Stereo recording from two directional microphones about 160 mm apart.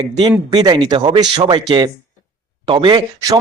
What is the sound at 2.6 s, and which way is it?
Speech, 30° right (ahead or behind).